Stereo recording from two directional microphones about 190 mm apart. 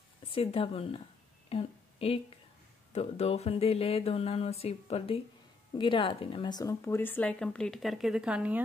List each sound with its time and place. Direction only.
0.3 s speech: 30° left (ahead or behind)
1.5 s a sound: 30° left (ahead or behind)
2.9 s speech: 35° left (ahead or behind); by 8.6 s 5° right (ahead or behind)